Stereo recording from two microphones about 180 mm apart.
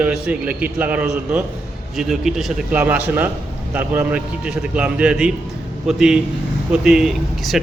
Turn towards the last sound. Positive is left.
turn(degrees=0)  # may be behind; listen again after turning